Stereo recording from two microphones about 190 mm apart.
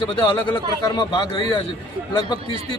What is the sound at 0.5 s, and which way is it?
Speech, 15° left (ahead or behind).